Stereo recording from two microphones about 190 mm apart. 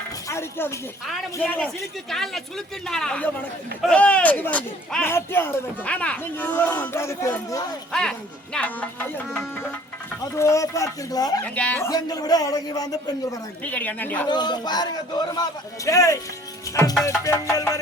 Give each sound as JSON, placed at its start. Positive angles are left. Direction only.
{"t": 0.3, "sound": "a man's voice", "side_deg": 15}
{"t": 11.4, "sound": "a man's voice", "side_deg": 5}
{"t": 14.3, "sound": "a man's voice", "side_deg": 20}